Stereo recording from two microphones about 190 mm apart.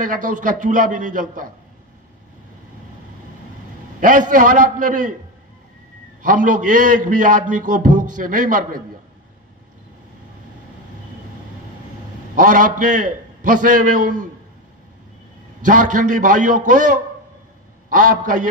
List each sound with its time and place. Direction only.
0.0 s a man's voice: 45° right (ahead or behind)
4.0 s a man's voice: 45° right (ahead or behind)
6.2 s a man's voice: 45° right (ahead or behind)
12.4 s a man's voice: 45° right (ahead or behind)
15.6 s a man's voice: 40° right (ahead or behind)